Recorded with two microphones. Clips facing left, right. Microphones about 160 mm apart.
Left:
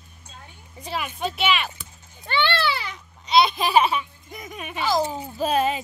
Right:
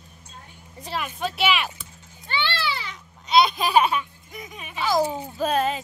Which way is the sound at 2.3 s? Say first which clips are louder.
Left 4 dB; 60° left (ahead or behind).